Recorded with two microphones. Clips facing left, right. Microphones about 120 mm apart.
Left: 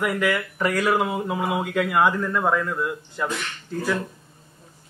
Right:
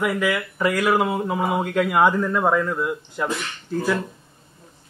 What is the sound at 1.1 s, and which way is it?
Mantra, centre (ahead or behind).